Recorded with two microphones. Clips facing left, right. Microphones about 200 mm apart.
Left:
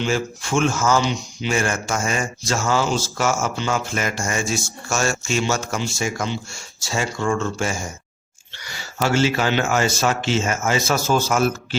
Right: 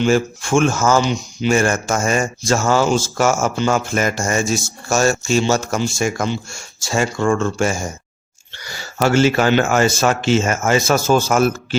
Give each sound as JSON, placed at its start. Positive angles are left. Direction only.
{"t": 0.0, "sound": "speech", "side_deg": -50}